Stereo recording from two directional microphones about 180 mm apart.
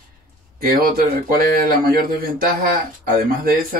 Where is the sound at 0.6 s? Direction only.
50° right (ahead or behind).